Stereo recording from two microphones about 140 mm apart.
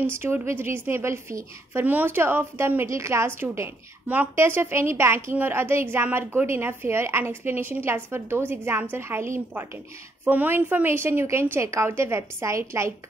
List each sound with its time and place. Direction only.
0.0 s a woman's voice: 15° right (ahead or behind)